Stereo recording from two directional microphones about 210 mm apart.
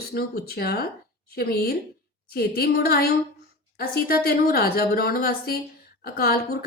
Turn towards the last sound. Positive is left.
turn(degrees=45)  # may be behind; listen again after turning